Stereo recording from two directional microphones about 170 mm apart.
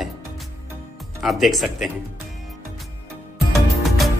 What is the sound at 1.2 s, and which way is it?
Speech, centre (ahead or behind).